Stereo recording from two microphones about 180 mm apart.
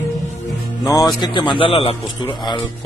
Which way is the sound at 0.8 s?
20° left (ahead or behind).